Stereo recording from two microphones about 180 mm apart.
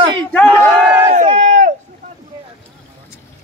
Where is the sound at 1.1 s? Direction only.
35° right (ahead or behind).